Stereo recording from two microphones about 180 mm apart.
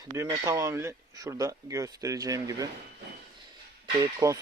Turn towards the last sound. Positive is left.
turn(degrees=-15)  # may be behind; listen again after turning